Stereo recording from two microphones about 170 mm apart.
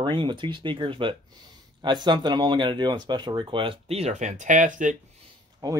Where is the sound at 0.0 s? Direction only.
30° right (ahead or behind); by 4.9 s 50° right (ahead or behind).